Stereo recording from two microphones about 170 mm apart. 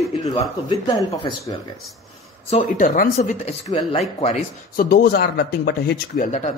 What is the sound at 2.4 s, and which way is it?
Speech, 45° left (ahead or behind).